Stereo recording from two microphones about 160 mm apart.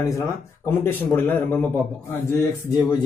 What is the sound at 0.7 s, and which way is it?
A man's voice, 15° left (ahead or behind).